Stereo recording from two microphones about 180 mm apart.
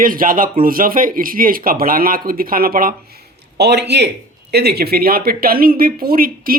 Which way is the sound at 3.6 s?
70° right (ahead or behind).